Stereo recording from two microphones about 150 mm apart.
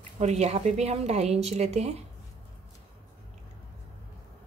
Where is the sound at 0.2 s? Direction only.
45° right (ahead or behind).